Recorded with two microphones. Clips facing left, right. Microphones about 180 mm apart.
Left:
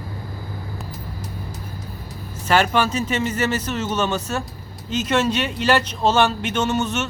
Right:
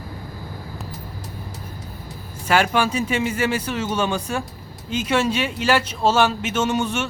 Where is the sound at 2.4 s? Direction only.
10° right (ahead or behind).